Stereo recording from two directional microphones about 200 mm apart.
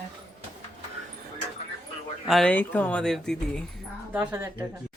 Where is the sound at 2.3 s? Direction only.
5° left (ahead or behind).